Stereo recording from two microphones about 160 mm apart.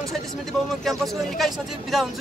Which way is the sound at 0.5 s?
Centre (ahead or behind).